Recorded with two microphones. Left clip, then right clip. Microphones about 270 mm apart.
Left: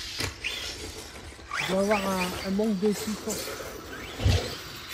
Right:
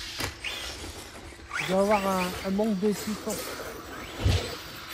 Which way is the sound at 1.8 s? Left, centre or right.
Right.